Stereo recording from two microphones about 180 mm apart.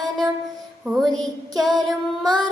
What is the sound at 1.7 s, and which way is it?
Child singing, centre (ahead or behind).